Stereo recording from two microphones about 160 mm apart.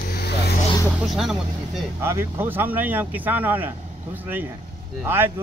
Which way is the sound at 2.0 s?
15° right (ahead or behind).